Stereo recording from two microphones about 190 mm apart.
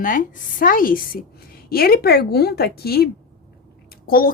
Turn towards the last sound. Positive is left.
turn(degrees=50)  # may be behind; listen again after turning